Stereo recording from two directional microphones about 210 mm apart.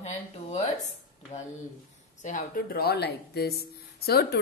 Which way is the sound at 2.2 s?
40° left (ahead or behind).